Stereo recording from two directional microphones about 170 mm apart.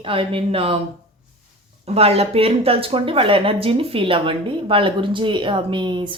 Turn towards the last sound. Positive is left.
turn(degrees=-30)  # may be behind; listen again after turning